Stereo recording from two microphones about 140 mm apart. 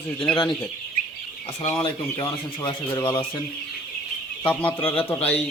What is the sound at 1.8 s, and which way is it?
Speech, 25° left (ahead or behind).